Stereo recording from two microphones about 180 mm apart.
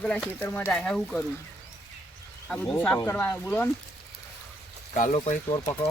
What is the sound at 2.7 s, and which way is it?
Speech, 15° left (ahead or behind).